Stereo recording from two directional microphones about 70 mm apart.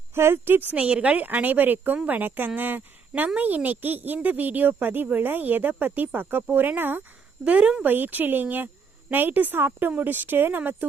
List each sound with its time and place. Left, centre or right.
0.1 s speech: right
7.4 s speech: centre
7.9 s speech: right